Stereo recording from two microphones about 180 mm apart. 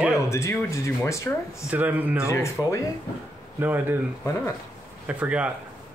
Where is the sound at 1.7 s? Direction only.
10° right (ahead or behind).